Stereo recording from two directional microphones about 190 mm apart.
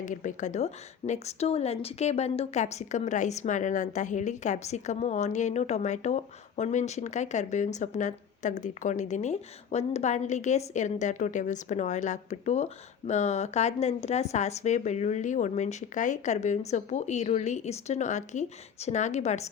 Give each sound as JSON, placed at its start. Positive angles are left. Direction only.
{"t": 0.0, "sound": "speech", "side_deg": 40}